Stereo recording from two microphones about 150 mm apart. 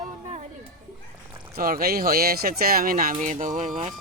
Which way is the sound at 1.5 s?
80° right.